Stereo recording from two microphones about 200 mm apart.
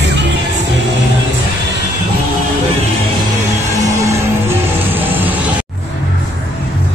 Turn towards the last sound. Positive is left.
turn(degrees=-10)  # may be behind; listen again after turning